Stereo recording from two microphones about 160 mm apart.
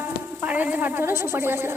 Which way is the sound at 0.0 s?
10° right (ahead or behind).